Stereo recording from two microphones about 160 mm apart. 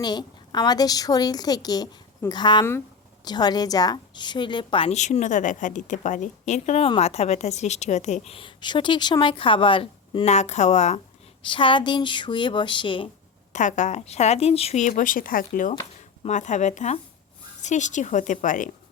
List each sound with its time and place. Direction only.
0.0 s a woman's voice: 25° left (ahead or behind); by 11.0 s 45° left (ahead or behind)
11.4 s a woman's voice: 30° left (ahead or behind)
13.5 s speech: 50° left (ahead or behind)